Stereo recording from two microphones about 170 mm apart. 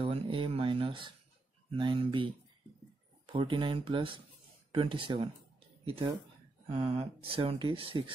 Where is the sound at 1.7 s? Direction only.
30° right (ahead or behind).